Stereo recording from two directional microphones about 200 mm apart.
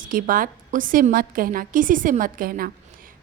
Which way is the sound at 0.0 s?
45° right (ahead or behind).